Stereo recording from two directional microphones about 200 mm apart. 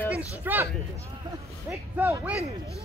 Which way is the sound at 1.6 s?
10° right (ahead or behind).